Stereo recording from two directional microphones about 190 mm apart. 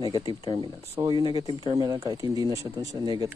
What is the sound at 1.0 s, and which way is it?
Speech, 25° right (ahead or behind).